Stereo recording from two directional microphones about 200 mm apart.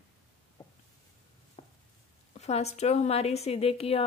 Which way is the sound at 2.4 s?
35° left (ahead or behind).